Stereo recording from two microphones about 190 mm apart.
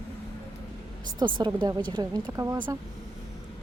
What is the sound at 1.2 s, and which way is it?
A woman's voice, 25° right (ahead or behind).